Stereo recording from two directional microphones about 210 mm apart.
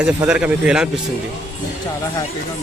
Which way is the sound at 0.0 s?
5° right (ahead or behind).